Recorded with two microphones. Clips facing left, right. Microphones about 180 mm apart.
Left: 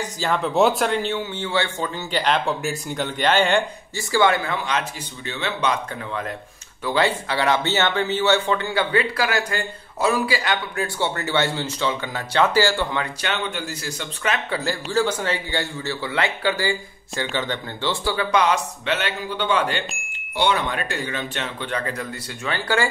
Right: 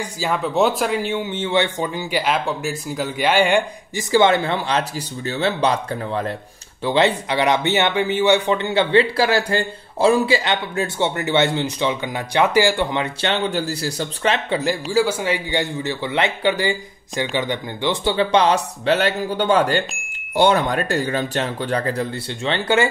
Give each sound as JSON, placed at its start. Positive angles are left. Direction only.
{"t": 0.0, "sound": "speech", "side_deg": -5}
{"t": 6.8, "sound": "speech", "side_deg": -20}